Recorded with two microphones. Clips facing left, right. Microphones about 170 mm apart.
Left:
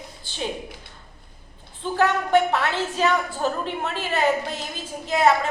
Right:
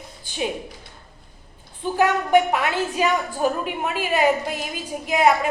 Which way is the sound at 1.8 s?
15° right (ahead or behind).